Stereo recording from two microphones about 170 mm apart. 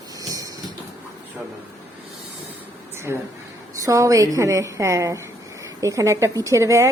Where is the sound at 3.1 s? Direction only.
15° right (ahead or behind).